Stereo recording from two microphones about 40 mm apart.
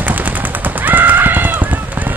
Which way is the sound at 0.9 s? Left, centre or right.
Right.